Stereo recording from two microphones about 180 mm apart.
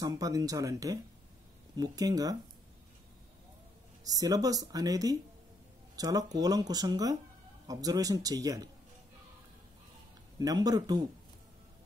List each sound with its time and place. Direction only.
0.0 s speech: 20° right (ahead or behind)
4.0 s speech: 20° right (ahead or behind)
10.4 s speech: 20° right (ahead or behind)